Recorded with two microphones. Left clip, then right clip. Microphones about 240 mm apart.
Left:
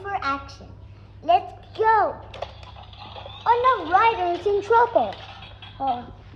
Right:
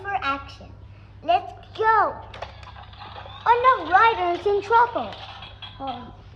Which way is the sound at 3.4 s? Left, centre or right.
Right.